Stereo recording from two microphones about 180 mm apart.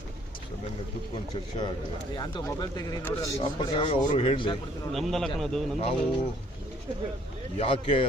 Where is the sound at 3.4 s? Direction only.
35° left (ahead or behind).